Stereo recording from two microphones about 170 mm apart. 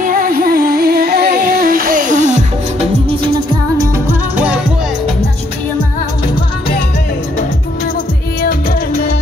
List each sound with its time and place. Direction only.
0.0 s music: 55° right (ahead or behind)
3.7 s music: 20° right (ahead or behind)
8.4 s music: 60° left (ahead or behind)